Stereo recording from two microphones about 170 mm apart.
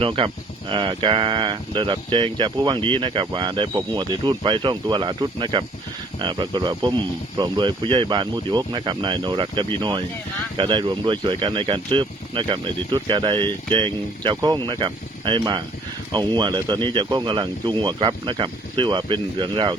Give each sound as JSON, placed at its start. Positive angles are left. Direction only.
{"t": 0.0, "sound": "speech", "side_deg": -30}